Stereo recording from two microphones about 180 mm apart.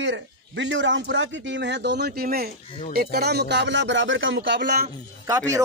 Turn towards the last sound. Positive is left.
turn(degrees=-20)  # may be behind; listen again after turning